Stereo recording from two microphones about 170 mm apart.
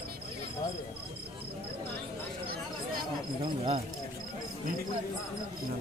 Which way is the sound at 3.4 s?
35° right (ahead or behind).